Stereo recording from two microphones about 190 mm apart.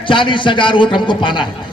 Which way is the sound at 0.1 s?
25° left (ahead or behind).